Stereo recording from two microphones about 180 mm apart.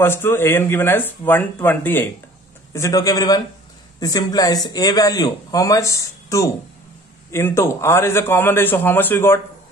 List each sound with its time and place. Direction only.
0.0 s a man's voice: 15° left (ahead or behind)